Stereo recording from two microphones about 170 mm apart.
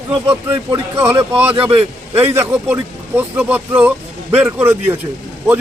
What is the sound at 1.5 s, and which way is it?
Speech, 35° right (ahead or behind).